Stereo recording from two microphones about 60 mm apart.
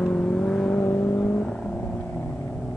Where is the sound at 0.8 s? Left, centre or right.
Left; by 1.7 s centre.